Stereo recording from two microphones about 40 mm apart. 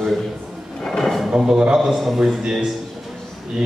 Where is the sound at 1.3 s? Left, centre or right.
Right.